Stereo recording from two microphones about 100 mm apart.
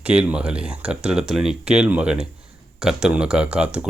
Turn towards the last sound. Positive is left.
turn(degrees=-10)  # may be behind; listen again after turning